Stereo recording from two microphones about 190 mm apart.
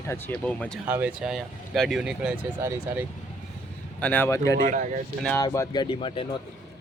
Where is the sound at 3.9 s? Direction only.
10° left (ahead or behind).